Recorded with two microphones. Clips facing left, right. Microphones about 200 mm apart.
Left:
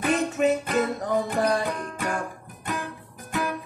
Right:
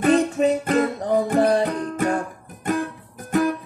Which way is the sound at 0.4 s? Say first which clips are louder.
Right 4 dB; 35° right (ahead or behind).